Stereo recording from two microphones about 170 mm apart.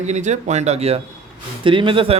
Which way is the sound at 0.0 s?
45° right (ahead or behind).